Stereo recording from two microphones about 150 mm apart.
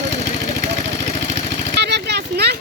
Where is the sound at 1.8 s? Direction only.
90° right.